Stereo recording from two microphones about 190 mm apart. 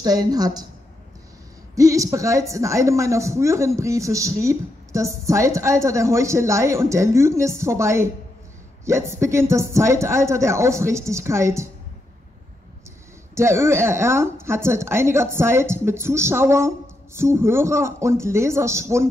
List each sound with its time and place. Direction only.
0.0 s a woman's voice: 20° right (ahead or behind)
1.8 s a man's voice: 15° right (ahead or behind)
13.3 s a man's voice: 15° right (ahead or behind)